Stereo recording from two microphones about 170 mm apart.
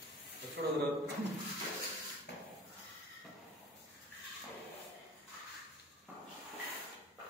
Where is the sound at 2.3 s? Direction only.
75° left (ahead or behind).